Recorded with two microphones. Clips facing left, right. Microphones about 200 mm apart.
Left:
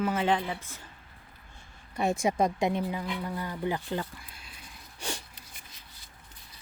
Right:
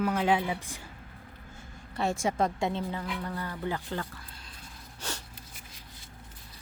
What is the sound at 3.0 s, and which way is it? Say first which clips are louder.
Speech: left 1 dB; 5° left (ahead or behind).